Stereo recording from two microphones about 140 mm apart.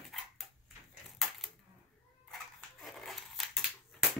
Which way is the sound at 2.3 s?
Centre (ahead or behind).